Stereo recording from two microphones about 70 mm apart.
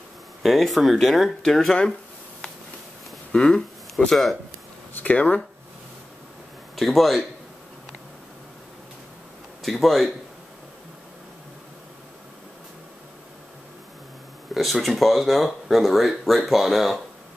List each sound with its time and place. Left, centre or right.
0.4 s speech: centre
3.3 s speech: centre
4.9 s speech: centre
6.7 s speech: centre
9.6 s speech: centre
14.5 s speech: centre